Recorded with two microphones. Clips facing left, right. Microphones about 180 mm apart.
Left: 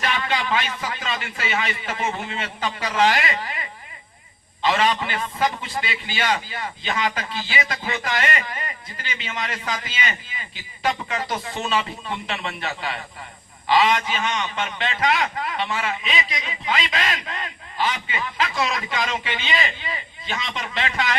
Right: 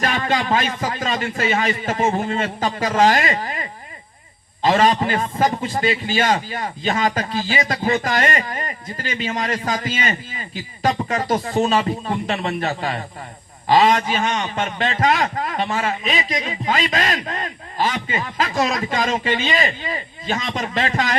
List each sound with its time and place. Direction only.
0.0 s a man's voice: 45° right (ahead or behind)